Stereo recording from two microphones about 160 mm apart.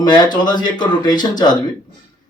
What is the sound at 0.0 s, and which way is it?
A man's voice, 25° left (ahead or behind).